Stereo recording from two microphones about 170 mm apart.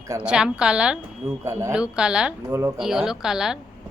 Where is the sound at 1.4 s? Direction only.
15° right (ahead or behind).